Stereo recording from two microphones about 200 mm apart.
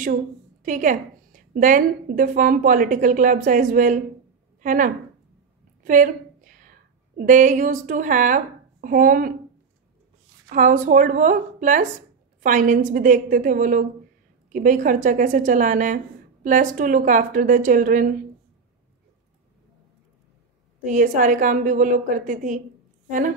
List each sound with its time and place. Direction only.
0.0 s a woman's voice: 40° right (ahead or behind)
10.5 s a woman's voice: 40° right (ahead or behind)
20.8 s a woman's voice: 40° right (ahead or behind)